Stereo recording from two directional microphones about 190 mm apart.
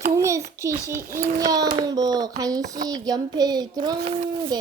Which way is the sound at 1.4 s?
20° right (ahead or behind).